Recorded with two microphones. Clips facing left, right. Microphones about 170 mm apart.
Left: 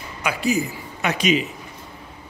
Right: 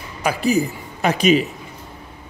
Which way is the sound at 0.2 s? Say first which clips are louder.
Right 4 dB; 35° right (ahead or behind).